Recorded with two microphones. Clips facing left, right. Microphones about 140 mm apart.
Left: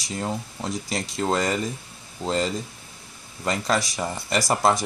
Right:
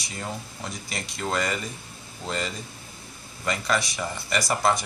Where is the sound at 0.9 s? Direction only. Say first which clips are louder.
Left 4 dB; 35° left (ahead or behind).